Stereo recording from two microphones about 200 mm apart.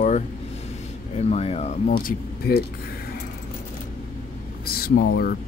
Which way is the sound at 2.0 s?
50° left (ahead or behind).